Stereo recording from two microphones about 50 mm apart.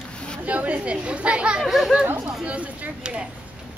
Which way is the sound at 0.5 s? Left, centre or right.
Right.